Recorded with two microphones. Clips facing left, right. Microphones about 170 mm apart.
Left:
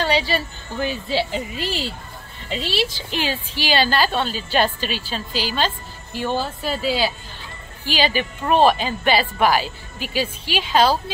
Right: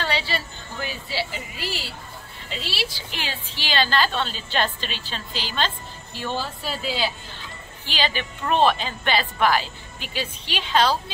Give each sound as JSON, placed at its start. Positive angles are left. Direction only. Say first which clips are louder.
{"t": 0.0, "sound": "a sound", "louder": "left 6 dB", "side_deg": 15}
{"t": 0.8, "sound": "speech", "louder": "left 7 dB", "side_deg": -10}
{"t": 2.6, "sound": "a woman's voice", "louder": "left 7 dB", "side_deg": 20}